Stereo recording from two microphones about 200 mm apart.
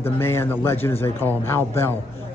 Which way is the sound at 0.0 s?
10° left (ahead or behind).